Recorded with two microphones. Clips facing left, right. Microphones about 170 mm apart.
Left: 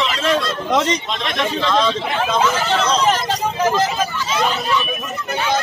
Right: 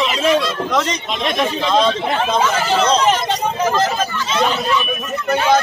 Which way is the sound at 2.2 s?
Centre (ahead or behind).